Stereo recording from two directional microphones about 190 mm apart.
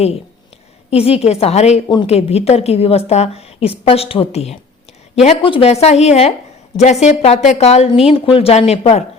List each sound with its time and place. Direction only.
0.9 s speech: 30° left (ahead or behind)